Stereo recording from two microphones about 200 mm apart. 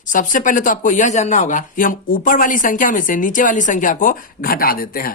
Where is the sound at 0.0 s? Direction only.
40° left (ahead or behind).